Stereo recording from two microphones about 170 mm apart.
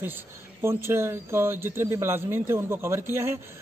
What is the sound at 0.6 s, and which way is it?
Speech, 15° right (ahead or behind).